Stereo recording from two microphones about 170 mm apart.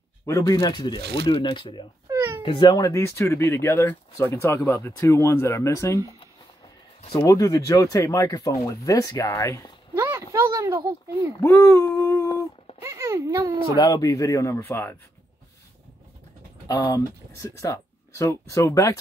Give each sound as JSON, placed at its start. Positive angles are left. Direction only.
{"t": 0.3, "sound": "speech", "side_deg": 20}
{"t": 2.0, "sound": "cat", "side_deg": -15}
{"t": 2.4, "sound": "speech", "side_deg": 30}
{"t": 7.1, "sound": "speech", "side_deg": 20}
{"t": 9.9, "sound": "a sound", "side_deg": -15}
{"t": 11.4, "sound": "a sound", "side_deg": 15}
{"t": 12.8, "sound": "a sound", "side_deg": -15}
{"t": 13.7, "sound": "speech", "side_deg": 25}
{"t": 16.6, "sound": "speech", "side_deg": 20}